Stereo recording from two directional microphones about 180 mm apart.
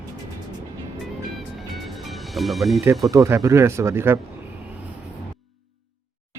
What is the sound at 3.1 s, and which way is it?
Speech, 15° right (ahead or behind).